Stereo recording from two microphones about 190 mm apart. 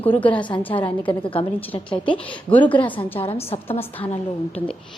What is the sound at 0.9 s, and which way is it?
Speech, 25° left (ahead or behind).